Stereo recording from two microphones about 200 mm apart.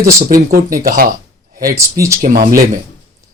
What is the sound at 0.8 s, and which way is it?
Speech, 45° right (ahead or behind).